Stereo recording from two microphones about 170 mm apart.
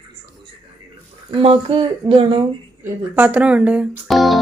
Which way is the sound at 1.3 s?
35° right (ahead or behind).